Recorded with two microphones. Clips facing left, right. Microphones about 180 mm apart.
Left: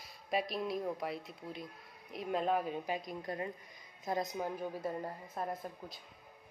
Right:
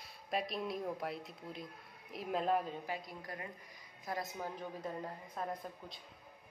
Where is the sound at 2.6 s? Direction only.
15° left (ahead or behind).